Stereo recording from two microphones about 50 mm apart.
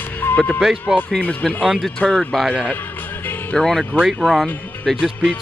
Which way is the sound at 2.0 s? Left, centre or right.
Centre.